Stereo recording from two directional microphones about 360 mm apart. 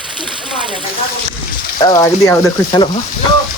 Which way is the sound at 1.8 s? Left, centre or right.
Centre.